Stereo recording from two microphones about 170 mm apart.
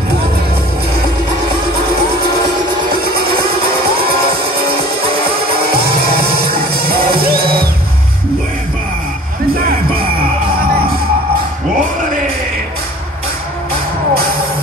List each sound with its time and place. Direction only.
6.4 s music: 65° right (ahead or behind)